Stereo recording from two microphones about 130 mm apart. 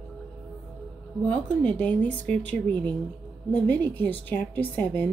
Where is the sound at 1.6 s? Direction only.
10° left (ahead or behind).